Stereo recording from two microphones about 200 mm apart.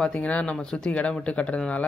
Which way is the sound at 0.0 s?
5° left (ahead or behind).